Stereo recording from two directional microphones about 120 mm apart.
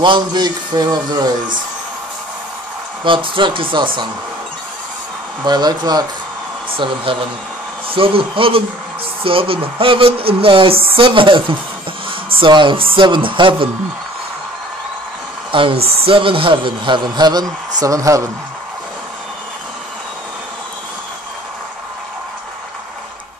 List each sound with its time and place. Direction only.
0.0 s a man's voice: 40° right (ahead or behind)
3.0 s speech: 45° right (ahead or behind)
5.4 s a man's voice: 35° right (ahead or behind)
6.7 s speech: 50° right (ahead or behind)
15.5 s a man's voice: 45° right (ahead or behind); by 18.2 s 25° right (ahead or behind)